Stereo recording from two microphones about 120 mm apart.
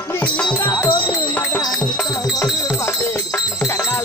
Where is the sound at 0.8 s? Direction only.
45° left (ahead or behind).